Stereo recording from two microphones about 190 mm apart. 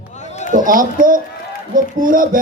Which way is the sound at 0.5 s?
45° right (ahead or behind).